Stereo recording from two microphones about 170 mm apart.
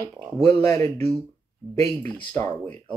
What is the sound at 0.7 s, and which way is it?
Speech, 40° right (ahead or behind).